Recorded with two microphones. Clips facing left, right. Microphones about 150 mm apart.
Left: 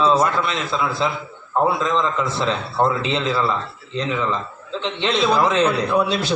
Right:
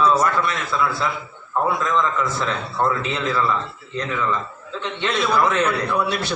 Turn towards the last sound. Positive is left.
turn(degrees=25)  # may be behind; listen again after turning